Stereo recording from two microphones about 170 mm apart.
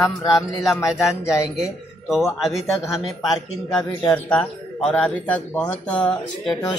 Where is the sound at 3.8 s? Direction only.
25° left (ahead or behind).